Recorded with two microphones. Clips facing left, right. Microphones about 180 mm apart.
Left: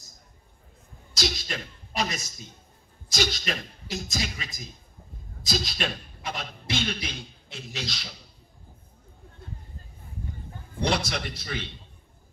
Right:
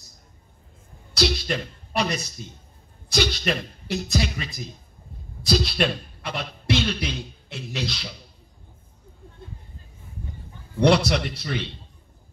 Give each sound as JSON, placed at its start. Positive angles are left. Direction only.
{"t": 1.1, "sound": "a man's voice", "side_deg": -60}
{"t": 3.1, "sound": "a sound", "side_deg": -60}
{"t": 3.4, "sound": "a man's voice", "side_deg": -60}
{"t": 10.8, "sound": "speech", "side_deg": -60}